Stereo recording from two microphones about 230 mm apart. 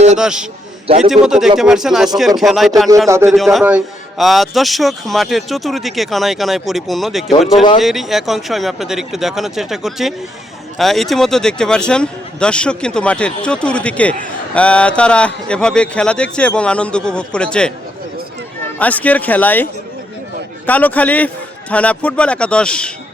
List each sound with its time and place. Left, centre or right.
0.2 s a man's voice: centre
0.9 s a man's voice: right
1.1 s a man's voice: centre
3.1 s a man's voice: centre
3.3 s a man's voice: centre
18.8 s speech: centre
20.7 s a man's voice: centre